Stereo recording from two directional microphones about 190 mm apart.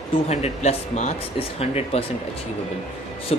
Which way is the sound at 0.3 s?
35° left (ahead or behind).